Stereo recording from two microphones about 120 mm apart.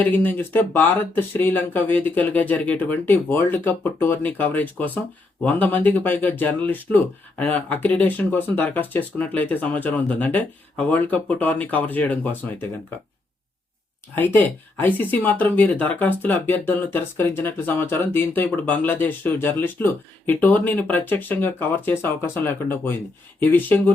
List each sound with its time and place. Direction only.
0.0 s speech: 15° left (ahead or behind)
14.2 s speech: 15° left (ahead or behind)